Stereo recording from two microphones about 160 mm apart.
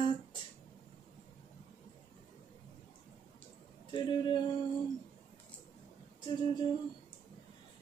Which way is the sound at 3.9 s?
30° left (ahead or behind).